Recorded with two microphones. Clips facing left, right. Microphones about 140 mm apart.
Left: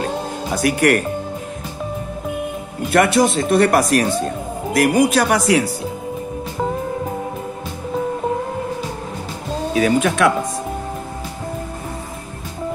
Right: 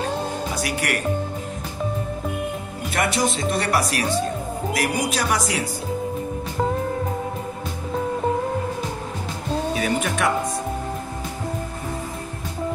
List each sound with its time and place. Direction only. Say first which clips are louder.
0.6 s speech: left 14 dB; 50° left (ahead or behind)
2.9 s speech: left 8 dB; 60° left (ahead or behind)
9.8 s speech: left 7 dB; 90° left